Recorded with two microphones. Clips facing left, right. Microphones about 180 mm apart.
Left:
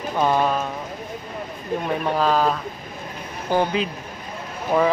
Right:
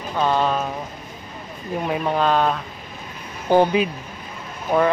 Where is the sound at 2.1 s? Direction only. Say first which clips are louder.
Even; 5° left (ahead or behind).